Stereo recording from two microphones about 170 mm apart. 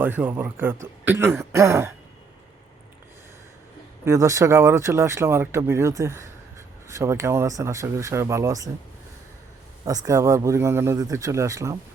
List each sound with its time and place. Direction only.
0.0 s speech: 10° right (ahead or behind)
4.0 s speech: 20° right (ahead or behind)
9.8 s a man's voice: 20° right (ahead or behind)